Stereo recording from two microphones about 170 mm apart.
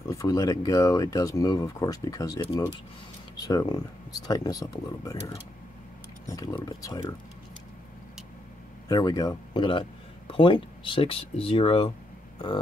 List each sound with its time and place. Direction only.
0.1 s speech: 20° left (ahead or behind)
6.2 s speech: 20° left (ahead or behind)
8.8 s speech: 20° left (ahead or behind)